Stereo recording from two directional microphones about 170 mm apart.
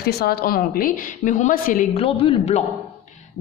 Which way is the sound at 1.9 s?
35° left (ahead or behind).